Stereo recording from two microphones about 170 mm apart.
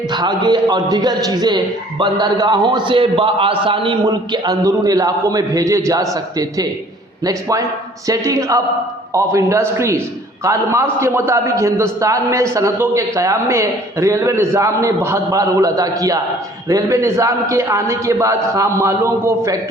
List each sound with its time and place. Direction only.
0.1 s a man's voice: 25° right (ahead or behind)